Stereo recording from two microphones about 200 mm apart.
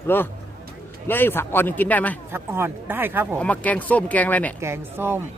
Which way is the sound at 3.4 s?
5° left (ahead or behind).